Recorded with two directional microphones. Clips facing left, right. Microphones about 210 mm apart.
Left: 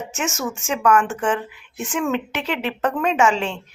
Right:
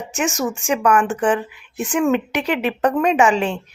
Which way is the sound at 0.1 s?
15° right (ahead or behind).